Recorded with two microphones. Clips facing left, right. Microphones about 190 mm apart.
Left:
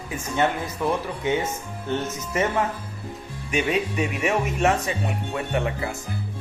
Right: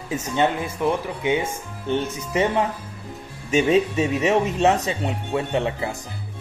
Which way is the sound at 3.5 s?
25° right (ahead or behind).